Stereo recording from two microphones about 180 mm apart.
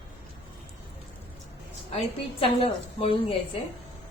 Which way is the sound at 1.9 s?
35° left (ahead or behind).